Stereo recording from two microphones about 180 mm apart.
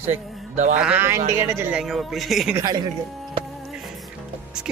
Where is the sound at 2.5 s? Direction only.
20° right (ahead or behind).